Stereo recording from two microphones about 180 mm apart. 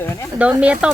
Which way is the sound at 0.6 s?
5° right (ahead or behind).